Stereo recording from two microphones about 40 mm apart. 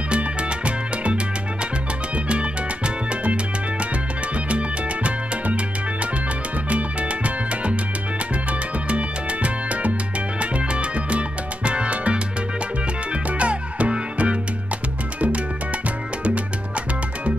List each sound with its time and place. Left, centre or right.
0.1 s music: right
2.2 s music: right
4.5 s music: right
6.7 s music: right